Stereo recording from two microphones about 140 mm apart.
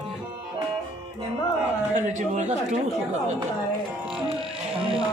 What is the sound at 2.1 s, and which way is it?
Speech, 60° right (ahead or behind).